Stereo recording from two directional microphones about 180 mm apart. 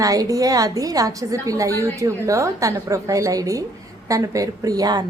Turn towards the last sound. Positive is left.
turn(degrees=-20)  # may be behind; listen again after turning